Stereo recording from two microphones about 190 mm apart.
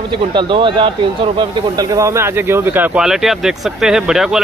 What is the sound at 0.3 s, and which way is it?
Speech, 25° right (ahead or behind).